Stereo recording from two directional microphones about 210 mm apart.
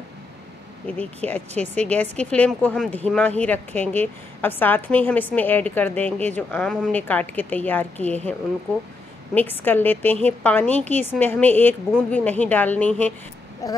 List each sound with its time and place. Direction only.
0.9 s speech: 5° left (ahead or behind)